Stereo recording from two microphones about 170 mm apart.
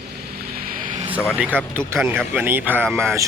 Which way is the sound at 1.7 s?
15° right (ahead or behind).